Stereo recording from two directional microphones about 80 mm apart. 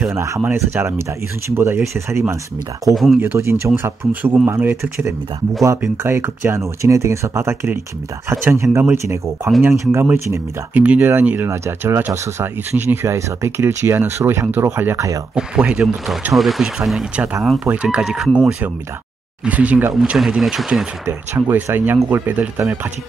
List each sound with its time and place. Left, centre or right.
0.1 s speech: right
2.8 s speech: centre
3.2 s speech: right
6.0 s speech: right
11.4 s speech: right
15.0 s speech: right
15.3 s speech: centre
17.1 s speech: centre
19.9 s speech: centre
21.0 s speech: right
22.3 s speech: centre